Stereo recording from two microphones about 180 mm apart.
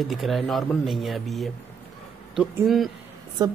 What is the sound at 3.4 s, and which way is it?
Speech, 20° right (ahead or behind).